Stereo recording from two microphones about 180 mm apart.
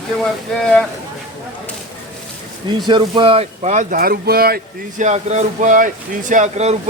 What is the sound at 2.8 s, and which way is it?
Speech, 25° right (ahead or behind).